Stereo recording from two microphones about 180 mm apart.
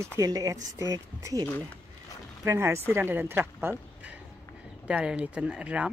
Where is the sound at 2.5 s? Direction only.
15° right (ahead or behind).